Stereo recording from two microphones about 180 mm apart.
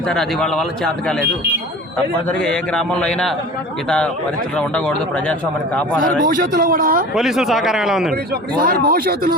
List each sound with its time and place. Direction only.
0.1 s a man's voice: 5° left (ahead or behind)
2.4 s a man's voice: 5° left (ahead or behind)
6.0 s a man's voice: 50° right (ahead or behind)
7.1 s a man's voice: centre (ahead or behind)
8.1 s a man's voice: 55° right (ahead or behind)